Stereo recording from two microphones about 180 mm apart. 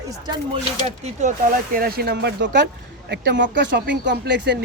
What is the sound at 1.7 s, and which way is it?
Speech, 55° right (ahead or behind).